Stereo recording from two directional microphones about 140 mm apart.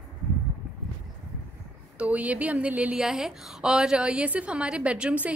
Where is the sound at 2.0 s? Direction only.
10° right (ahead or behind).